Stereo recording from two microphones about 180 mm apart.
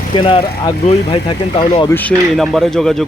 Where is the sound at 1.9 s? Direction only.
5° left (ahead or behind).